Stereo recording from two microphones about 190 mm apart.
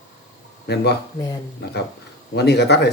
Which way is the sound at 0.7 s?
60° left (ahead or behind).